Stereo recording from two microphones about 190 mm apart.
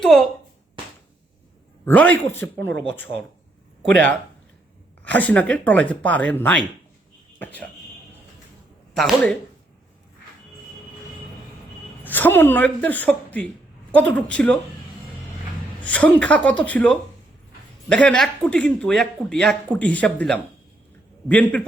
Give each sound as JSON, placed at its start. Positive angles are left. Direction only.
{"t": 0.0, "sound": "speech", "side_deg": 0}
{"t": 1.8, "sound": "speech", "side_deg": 10}
{"t": 2.6, "sound": "speech", "side_deg": -75}
{"t": 3.8, "sound": "speech", "side_deg": 10}
{"t": 9.0, "sound": "speech", "side_deg": 0}
{"t": 12.0, "sound": "speech", "side_deg": 10}
{"t": 15.8, "sound": "speech", "side_deg": 5}